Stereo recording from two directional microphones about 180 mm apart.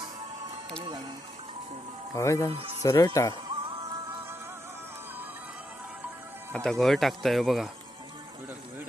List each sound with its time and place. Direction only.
0.7 s speech: 25° right (ahead or behind)
2.1 s speech: 15° left (ahead or behind)
6.5 s speech: 5° left (ahead or behind)